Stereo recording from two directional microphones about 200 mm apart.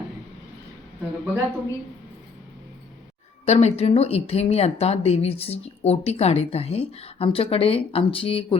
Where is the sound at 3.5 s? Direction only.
35° left (ahead or behind).